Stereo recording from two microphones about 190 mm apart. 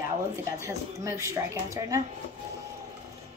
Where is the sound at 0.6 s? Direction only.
15° right (ahead or behind).